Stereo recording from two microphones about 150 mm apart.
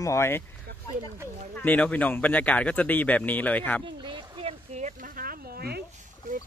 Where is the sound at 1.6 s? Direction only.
10° left (ahead or behind).